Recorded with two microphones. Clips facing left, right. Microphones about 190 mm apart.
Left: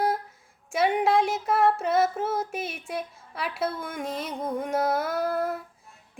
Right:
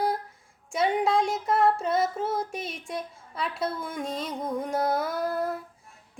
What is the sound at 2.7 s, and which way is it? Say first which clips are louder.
Music: left 1 dB; 5° left (ahead or behind).